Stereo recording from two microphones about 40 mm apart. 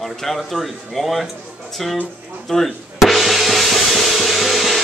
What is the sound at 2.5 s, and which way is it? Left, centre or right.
Music, centre.